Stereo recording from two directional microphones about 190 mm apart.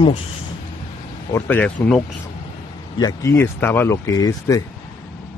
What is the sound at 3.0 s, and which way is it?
Speech, 20° left (ahead or behind).